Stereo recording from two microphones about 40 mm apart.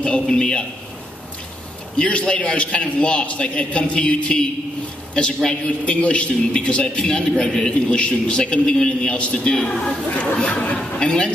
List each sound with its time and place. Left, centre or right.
0.0 s a man's voice: left
2.0 s a man's voice: left
7.7 s a man's voice: left
10.2 s speech: left
10.8 s a man's voice: left